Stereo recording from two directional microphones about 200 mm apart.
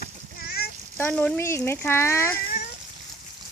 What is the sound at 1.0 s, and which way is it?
Speech, 10° left (ahead or behind).